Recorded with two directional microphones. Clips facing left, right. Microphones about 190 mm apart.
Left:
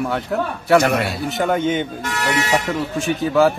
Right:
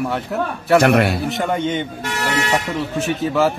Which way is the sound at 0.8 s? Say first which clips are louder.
Right 4 dB; 60° right (ahead or behind).